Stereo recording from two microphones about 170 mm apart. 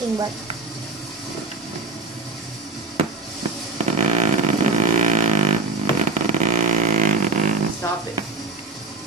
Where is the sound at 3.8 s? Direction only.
45° right (ahead or behind).